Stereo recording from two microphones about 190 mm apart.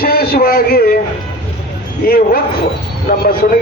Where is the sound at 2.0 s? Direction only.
50° left (ahead or behind).